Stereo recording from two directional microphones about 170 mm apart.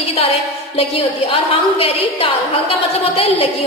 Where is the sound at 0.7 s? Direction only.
30° left (ahead or behind).